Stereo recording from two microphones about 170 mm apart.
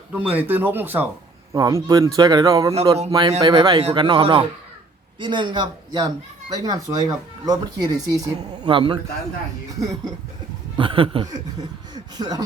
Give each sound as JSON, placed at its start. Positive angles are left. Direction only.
{"t": 0.1, "sound": "speech", "side_deg": -10}